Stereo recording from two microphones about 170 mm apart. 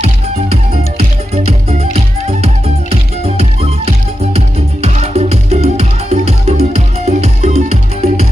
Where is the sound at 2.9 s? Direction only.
35° right (ahead or behind).